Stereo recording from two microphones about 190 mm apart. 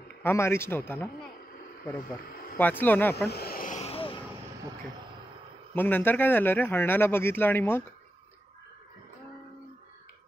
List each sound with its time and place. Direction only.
0.2 s a man's voice: 15° left (ahead or behind)
2.5 s a man's voice: 10° left (ahead or behind)
3.3 s vehicle: 55° left (ahead or behind); by 4.2 s 30° left (ahead or behind)
5.8 s a man's voice: 10° left (ahead or behind)